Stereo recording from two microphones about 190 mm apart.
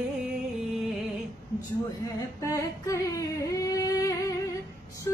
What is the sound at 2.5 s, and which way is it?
Singing, 15° left (ahead or behind).